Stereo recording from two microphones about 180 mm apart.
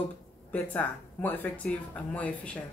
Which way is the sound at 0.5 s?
10° left (ahead or behind).